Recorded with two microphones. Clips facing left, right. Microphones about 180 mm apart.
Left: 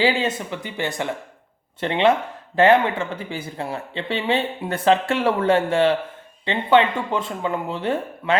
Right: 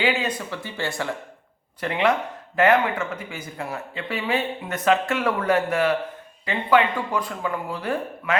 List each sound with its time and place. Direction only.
0.0 s speech: 25° left (ahead or behind)